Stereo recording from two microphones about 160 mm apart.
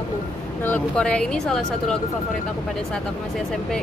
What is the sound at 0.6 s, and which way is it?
Speech, 10° left (ahead or behind).